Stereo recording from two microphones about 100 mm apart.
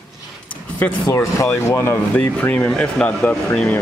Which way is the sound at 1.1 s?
30° left (ahead or behind).